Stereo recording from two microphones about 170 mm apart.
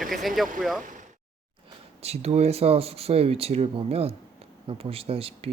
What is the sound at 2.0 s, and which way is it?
Speech, 40° right (ahead or behind).